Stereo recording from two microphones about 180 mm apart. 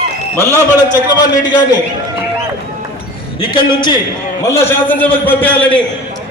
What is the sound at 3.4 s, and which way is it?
Speech, 25° left (ahead or behind).